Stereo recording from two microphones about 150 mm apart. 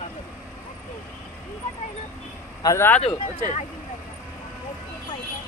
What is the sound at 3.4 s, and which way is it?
Speech, 25° right (ahead or behind).